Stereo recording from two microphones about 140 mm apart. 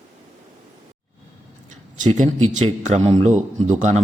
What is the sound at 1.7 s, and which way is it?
Speech, 60° right (ahead or behind).